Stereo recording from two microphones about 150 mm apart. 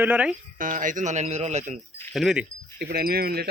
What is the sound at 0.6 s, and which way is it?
Speech, 60° right (ahead or behind).